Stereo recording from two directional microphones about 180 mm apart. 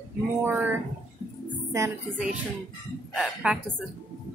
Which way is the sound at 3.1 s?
5° right (ahead or behind).